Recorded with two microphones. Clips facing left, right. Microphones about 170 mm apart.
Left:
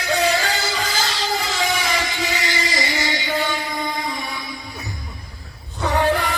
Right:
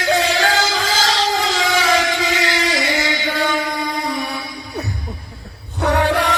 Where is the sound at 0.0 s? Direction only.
90° right.